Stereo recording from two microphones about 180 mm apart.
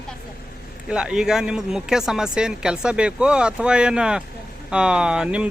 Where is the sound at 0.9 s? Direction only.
5° right (ahead or behind).